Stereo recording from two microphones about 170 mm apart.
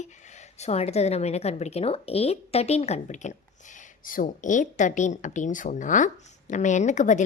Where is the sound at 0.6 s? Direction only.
40° left (ahead or behind).